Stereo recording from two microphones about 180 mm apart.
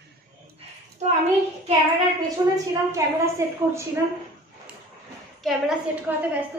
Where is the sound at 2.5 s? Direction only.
15° right (ahead or behind).